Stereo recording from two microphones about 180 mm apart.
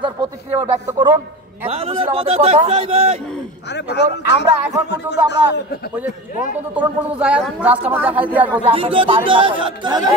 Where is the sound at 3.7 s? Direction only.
70° left (ahead or behind).